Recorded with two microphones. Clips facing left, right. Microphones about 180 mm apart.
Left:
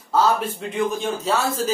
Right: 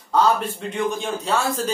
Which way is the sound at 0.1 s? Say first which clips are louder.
Even; centre (ahead or behind).